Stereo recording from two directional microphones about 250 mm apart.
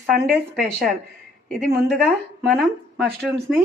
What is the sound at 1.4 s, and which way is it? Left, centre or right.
Speech, centre.